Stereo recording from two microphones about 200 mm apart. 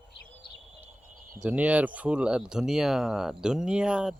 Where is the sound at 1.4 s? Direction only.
5° right (ahead or behind).